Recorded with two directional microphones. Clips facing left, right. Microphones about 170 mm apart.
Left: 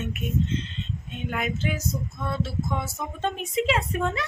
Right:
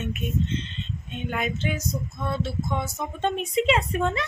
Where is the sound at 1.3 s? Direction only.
5° left (ahead or behind).